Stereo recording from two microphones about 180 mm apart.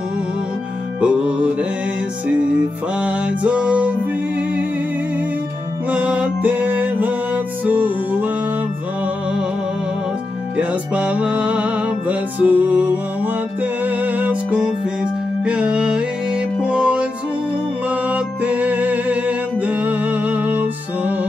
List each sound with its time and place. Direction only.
1.0 s music: 5° right (ahead or behind)
3.0 s music: 5° right (ahead or behind)
5.9 s music: 10° right (ahead or behind)
10.6 s music: 10° right (ahead or behind)
18.1 s music: 10° right (ahead or behind)